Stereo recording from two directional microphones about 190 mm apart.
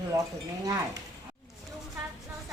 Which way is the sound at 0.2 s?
20° right (ahead or behind).